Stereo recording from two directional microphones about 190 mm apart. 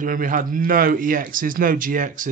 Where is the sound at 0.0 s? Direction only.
45° right (ahead or behind).